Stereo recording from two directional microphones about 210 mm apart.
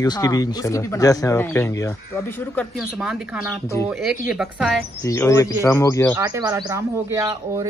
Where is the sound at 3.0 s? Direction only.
5° right (ahead or behind).